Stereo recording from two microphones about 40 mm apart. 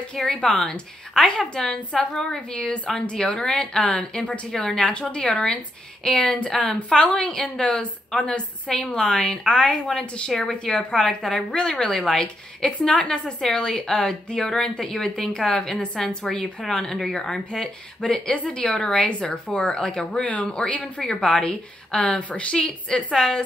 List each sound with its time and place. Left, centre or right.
0.2 s a woman's voice: centre
18.9 s a woman's voice: left